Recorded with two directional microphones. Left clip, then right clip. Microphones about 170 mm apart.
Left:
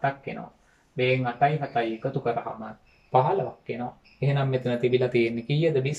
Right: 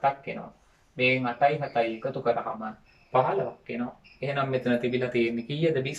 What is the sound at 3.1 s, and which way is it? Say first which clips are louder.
Speech: left 2 dB; 20° left (ahead or behind).